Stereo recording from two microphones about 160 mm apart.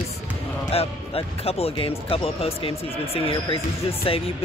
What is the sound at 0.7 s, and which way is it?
A man's voice, 40° left (ahead or behind).